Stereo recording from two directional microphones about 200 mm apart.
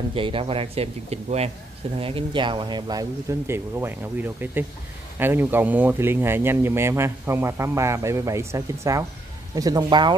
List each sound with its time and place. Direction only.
0.1 s speech: 25° right (ahead or behind)